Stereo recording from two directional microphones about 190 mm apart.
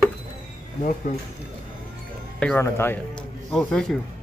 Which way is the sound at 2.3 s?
5° left (ahead or behind).